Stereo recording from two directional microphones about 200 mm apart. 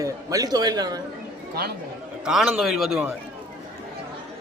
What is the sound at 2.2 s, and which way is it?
Speech, centre (ahead or behind).